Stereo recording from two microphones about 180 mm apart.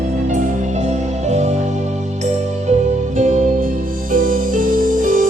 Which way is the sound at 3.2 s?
40° right (ahead or behind).